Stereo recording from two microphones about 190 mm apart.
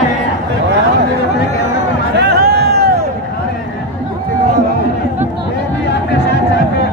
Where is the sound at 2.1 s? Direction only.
55° right (ahead or behind).